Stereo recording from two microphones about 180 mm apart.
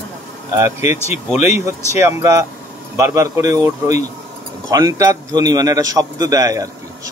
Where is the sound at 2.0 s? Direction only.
15° right (ahead or behind).